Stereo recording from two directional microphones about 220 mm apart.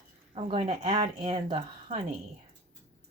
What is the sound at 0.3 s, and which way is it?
Speech, 25° right (ahead or behind).